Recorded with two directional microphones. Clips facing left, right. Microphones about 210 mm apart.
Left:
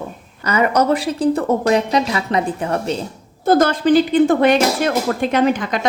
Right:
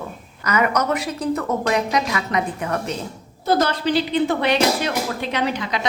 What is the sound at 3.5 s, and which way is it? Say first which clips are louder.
Speech: left 6 dB; 50° left (ahead or behind).